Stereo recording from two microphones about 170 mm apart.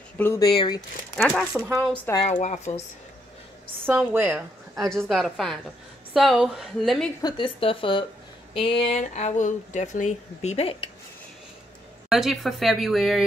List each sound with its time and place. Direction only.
0.2 s speech: 15° left (ahead or behind)
0.5 s speech: 25° left (ahead or behind)
1.5 s speech: 5° right (ahead or behind)
2.1 s speech: 40° left (ahead or behind)
3.8 s a woman's voice: 15° right (ahead or behind)
4.7 s speech: centre (ahead or behind)
7.2 s speech: 25° left (ahead or behind)
12.1 s speech: centre (ahead or behind)